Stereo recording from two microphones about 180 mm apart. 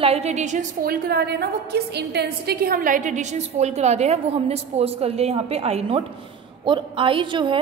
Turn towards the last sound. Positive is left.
turn(degrees=-25)  # may be behind; listen again after turning